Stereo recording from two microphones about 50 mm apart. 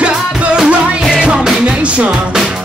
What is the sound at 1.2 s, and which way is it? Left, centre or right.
Music, centre.